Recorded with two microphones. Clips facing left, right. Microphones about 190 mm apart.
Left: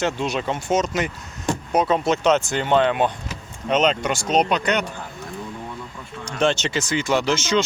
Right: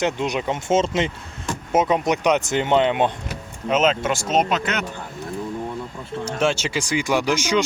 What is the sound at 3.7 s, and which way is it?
Speech, 5° right (ahead or behind).